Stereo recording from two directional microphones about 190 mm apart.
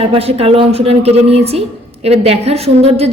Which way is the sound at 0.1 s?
30° right (ahead or behind).